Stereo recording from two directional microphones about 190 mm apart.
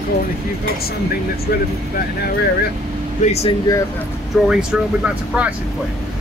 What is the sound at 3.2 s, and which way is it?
Speech, 35° left (ahead or behind).